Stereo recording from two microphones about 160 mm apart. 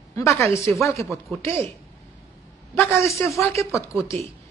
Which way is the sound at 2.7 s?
15° left (ahead or behind).